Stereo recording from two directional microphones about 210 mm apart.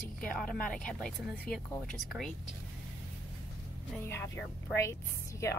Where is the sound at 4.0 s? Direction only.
10° left (ahead or behind).